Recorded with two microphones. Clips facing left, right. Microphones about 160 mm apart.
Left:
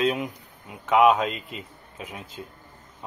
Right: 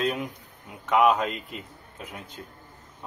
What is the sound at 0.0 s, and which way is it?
Speech, centre (ahead or behind).